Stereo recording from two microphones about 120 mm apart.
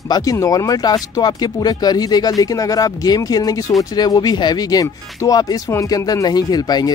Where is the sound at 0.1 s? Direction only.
30° left (ahead or behind).